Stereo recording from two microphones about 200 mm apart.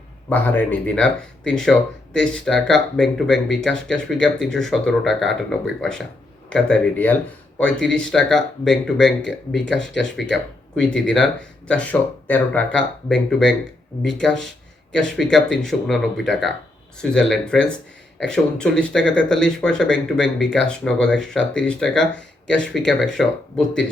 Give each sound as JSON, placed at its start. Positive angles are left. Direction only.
{"t": 0.3, "sound": "speech", "side_deg": 10}